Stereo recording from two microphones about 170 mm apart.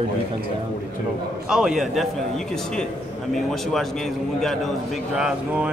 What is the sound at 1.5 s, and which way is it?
A man's voice, 5° right (ahead or behind).